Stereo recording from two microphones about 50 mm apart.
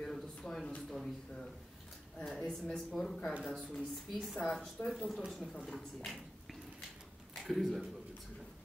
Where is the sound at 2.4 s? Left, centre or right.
Centre.